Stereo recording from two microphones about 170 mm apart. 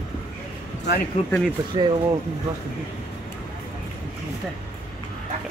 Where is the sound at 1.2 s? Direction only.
40° left (ahead or behind).